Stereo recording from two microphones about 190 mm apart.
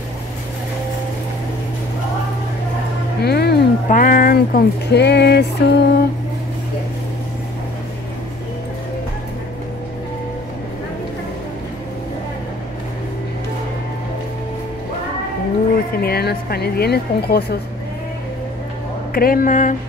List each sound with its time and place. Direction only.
3.2 s speech: 60° left (ahead or behind)
16.0 s speech: 55° left (ahead or behind)
19.1 s speech: 50° left (ahead or behind)